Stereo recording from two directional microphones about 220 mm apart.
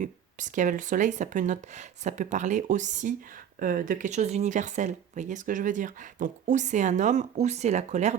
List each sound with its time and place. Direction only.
0.0 s speech: 35° right (ahead or behind)